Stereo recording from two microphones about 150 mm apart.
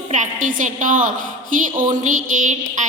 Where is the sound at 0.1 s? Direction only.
55° right (ahead or behind).